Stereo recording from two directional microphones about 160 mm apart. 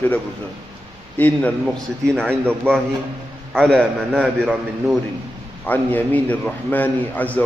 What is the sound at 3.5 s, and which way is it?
Speech, 5° left (ahead or behind).